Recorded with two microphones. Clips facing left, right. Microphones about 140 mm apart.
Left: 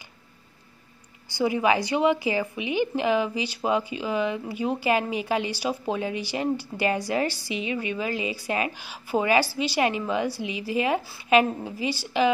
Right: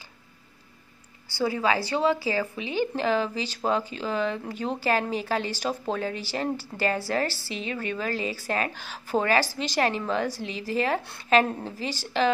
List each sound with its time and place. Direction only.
1.4 s speech: 15° left (ahead or behind)